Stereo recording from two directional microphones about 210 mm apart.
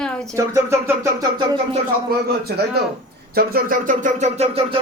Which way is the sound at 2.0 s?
50° right (ahead or behind).